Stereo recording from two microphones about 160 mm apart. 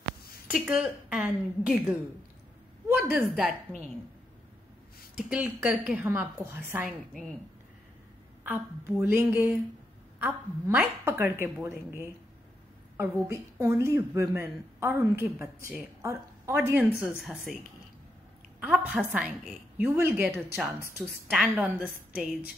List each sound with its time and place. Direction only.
0.5 s a woman's voice: 5° right (ahead or behind)
3.0 s a woman's voice: centre (ahead or behind)
5.1 s a woman's voice: 10° right (ahead or behind)
8.5 s a woman's voice: 15° right (ahead or behind)
18.6 s a woman's voice: 5° right (ahead or behind)